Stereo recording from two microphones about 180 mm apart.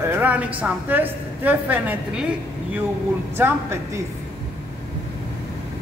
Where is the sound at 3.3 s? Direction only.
15° right (ahead or behind).